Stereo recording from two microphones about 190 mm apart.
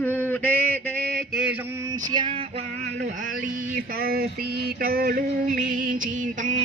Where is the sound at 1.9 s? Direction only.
20° right (ahead or behind).